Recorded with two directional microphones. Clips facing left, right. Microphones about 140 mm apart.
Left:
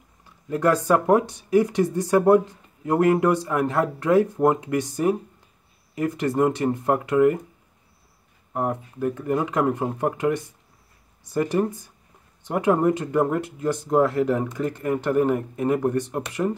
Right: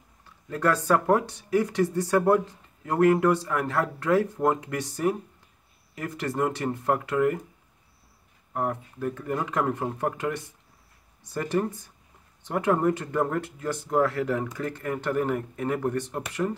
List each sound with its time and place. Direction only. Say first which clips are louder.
0.5 s speech: left 4 dB; 15° left (ahead or behind)
8.5 s speech: left 3 dB; 20° left (ahead or behind)